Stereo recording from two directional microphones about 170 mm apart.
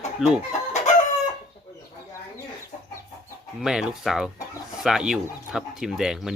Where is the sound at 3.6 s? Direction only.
5° right (ahead or behind).